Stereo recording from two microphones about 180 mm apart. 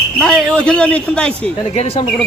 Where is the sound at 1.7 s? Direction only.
35° left (ahead or behind).